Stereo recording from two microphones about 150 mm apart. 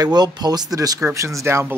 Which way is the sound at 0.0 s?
30° right (ahead or behind).